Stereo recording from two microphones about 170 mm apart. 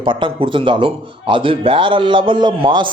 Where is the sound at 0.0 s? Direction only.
30° right (ahead or behind).